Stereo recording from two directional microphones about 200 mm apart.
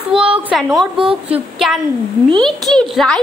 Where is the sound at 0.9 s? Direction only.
25° right (ahead or behind).